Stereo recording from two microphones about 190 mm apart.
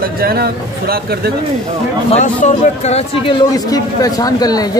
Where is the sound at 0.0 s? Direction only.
55° right (ahead or behind).